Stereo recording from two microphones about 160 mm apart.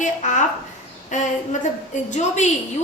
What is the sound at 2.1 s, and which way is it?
Speech, 45° left (ahead or behind).